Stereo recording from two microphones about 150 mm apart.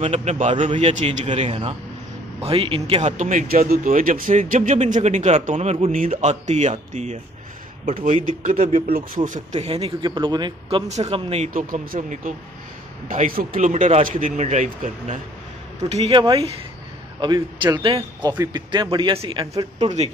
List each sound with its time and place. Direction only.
0.0 s a man's voice: 50° right (ahead or behind)
3.1 s a man's voice: 55° right (ahead or behind); by 10.8 s 30° right (ahead or behind)
10.9 s a man's voice: 50° right (ahead or behind)
11.5 s speech: 70° right (ahead or behind)
15.9 s a man's voice: 40° right (ahead or behind)
19.5 s a man's voice: 45° right (ahead or behind)